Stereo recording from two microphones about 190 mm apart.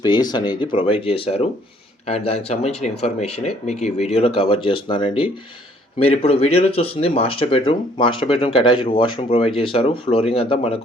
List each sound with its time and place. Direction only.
0.0 s speech: 20° left (ahead or behind)